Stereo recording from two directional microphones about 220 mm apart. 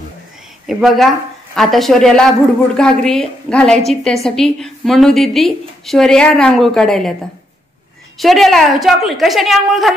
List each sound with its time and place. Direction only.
0.7 s a woman's voice: centre (ahead or behind)
8.2 s a woman's voice: centre (ahead or behind)